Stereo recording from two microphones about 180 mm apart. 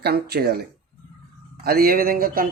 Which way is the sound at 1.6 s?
55° right (ahead or behind).